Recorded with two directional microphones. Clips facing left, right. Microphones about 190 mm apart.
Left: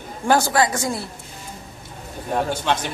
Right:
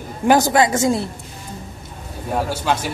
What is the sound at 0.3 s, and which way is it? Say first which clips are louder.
Speech: right 4 dB; 20° right (ahead or behind).